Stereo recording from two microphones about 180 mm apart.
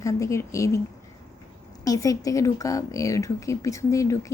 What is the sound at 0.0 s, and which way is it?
Speech, 15° left (ahead or behind).